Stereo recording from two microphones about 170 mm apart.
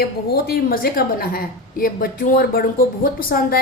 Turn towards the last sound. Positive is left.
turn(degrees=60)  # may be behind; listen again after turning